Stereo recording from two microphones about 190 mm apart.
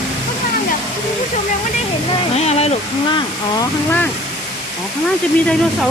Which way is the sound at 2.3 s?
35° left (ahead or behind).